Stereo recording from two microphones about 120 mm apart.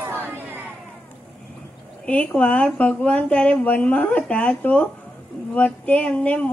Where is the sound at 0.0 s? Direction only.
15° right (ahead or behind).